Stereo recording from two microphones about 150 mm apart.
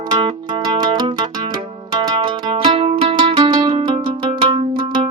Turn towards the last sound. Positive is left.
turn(degrees=-35)  # may be behind; listen again after turning